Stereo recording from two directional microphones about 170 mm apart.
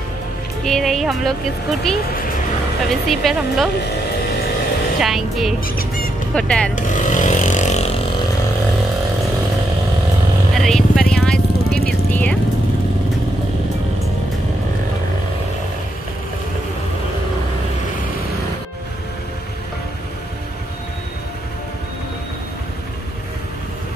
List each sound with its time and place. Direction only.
0.7 s speech: centre (ahead or behind)
5.0 s speech: centre (ahead or behind)
6.7 s vehicle: 50° left (ahead or behind)
10.5 s vehicle: centre (ahead or behind)